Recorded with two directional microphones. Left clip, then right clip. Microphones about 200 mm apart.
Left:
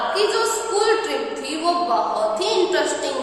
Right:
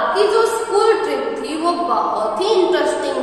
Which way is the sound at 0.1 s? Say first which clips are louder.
Right 5 dB; 10° left (ahead or behind).